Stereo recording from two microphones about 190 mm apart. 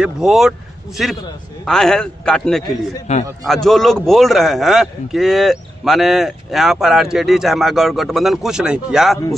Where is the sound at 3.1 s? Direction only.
35° left (ahead or behind).